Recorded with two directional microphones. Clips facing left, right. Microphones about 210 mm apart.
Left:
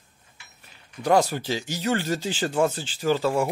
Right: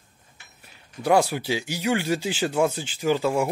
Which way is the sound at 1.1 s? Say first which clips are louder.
Even; 10° right (ahead or behind).